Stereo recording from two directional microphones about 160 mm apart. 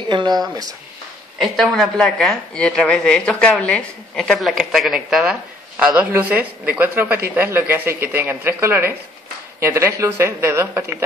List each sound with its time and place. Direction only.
0.1 s speech: 30° right (ahead or behind)
1.4 s a woman's voice: centre (ahead or behind); by 11.0 s 15° right (ahead or behind)